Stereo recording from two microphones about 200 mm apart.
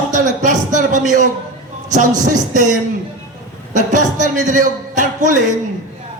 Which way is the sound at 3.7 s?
40° right (ahead or behind).